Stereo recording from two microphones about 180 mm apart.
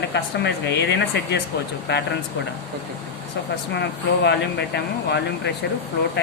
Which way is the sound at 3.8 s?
70° left (ahead or behind).